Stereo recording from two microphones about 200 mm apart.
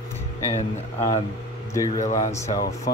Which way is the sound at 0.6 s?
30° left (ahead or behind).